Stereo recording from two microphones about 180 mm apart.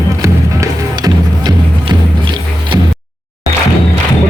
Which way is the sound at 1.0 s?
20° right (ahead or behind).